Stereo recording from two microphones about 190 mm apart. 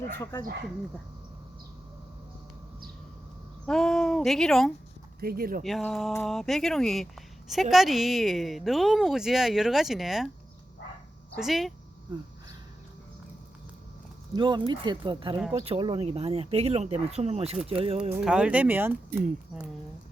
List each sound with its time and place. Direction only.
0.2 s speech: 20° left (ahead or behind)
3.7 s speech: centre (ahead or behind)
5.2 s speech: 50° right (ahead or behind)
5.6 s speech: centre (ahead or behind)
11.3 s speech: centre (ahead or behind)
14.3 s speech: 25° right (ahead or behind)
18.1 s speech: 5° right (ahead or behind)